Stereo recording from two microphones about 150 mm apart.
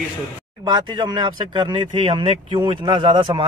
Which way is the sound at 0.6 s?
30° right (ahead or behind).